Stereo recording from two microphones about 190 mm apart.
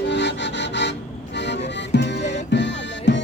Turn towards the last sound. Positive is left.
turn(degrees=70)  # may be behind; listen again after turning